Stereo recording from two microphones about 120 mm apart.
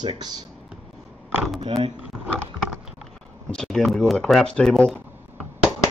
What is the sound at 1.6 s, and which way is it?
Speech, 55° right (ahead or behind).